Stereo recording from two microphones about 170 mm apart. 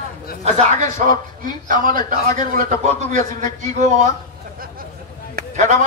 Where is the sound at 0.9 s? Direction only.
55° right (ahead or behind).